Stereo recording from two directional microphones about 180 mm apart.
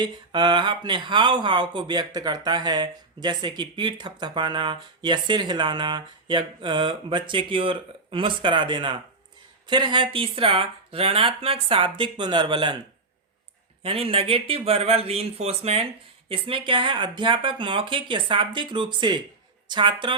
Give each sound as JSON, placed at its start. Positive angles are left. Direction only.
{"t": 0.0, "sound": "speech", "side_deg": -25}
{"t": 13.8, "sound": "speech", "side_deg": -30}